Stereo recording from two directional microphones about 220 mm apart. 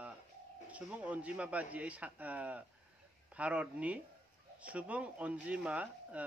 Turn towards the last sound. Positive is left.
turn(degrees=-5)  # may be behind; listen again after turning